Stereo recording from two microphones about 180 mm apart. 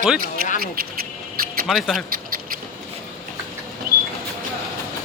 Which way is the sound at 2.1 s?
50° right (ahead or behind).